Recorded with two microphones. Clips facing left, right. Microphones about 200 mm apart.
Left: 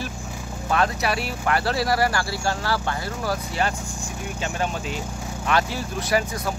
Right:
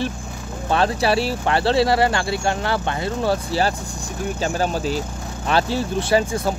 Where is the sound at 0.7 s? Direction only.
30° right (ahead or behind).